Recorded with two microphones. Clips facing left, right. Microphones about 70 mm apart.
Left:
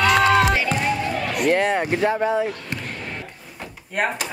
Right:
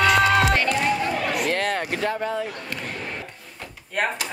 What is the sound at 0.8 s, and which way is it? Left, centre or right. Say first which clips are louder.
Basketball bounce: even; centre.